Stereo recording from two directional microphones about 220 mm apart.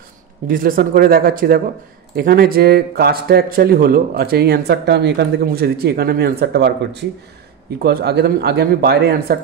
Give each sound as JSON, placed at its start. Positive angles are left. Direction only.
{"t": 0.5, "sound": "speech", "side_deg": -40}